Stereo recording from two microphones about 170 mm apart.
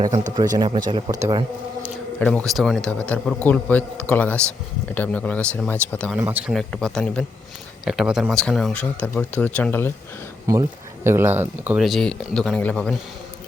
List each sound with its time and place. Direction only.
0.3 s speech: 25° right (ahead or behind)
2.1 s speech: 5° left (ahead or behind)
6.1 s speech: 10° right (ahead or behind); by 9.9 s 10° left (ahead or behind)
10.4 s speech: 20° right (ahead or behind); by 13.0 s 5° left (ahead or behind)